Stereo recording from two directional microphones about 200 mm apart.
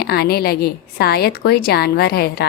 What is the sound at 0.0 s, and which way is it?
A woman's voice, 50° left (ahead or behind).